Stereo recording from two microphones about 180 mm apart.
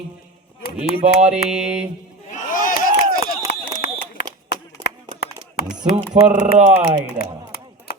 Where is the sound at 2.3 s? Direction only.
50° left (ahead or behind).